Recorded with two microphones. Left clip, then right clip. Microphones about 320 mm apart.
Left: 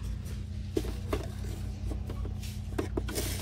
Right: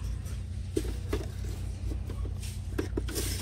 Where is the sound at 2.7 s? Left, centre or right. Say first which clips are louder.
Even; left.